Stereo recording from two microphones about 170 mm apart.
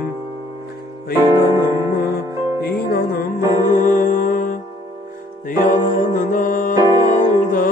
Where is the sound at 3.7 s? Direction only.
50° left (ahead or behind).